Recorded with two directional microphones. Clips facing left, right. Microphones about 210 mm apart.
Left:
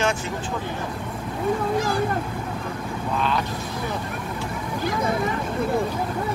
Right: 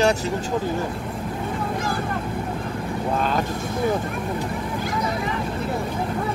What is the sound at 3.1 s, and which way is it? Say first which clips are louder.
Vehicle: right 1 dB; 45° right (ahead or behind).